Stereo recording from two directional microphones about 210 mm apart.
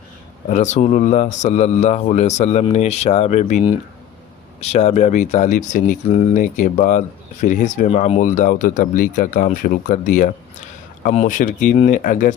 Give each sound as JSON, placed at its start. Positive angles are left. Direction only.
{"t": 0.4, "sound": "speech", "side_deg": 35}